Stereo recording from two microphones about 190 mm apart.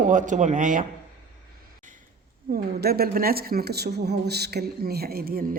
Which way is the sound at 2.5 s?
55° right (ahead or behind).